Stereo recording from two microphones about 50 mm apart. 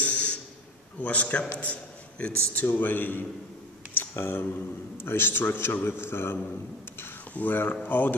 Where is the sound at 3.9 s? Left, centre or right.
Left.